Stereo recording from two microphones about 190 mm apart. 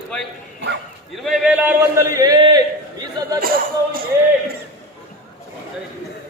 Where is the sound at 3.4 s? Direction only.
50° right (ahead or behind).